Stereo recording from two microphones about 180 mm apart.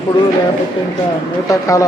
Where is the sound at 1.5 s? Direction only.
20° left (ahead or behind).